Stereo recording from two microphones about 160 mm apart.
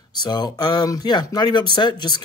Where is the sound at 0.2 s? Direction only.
25° left (ahead or behind).